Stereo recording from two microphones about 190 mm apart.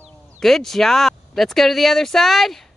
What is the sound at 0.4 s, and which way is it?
Speech, centre (ahead or behind).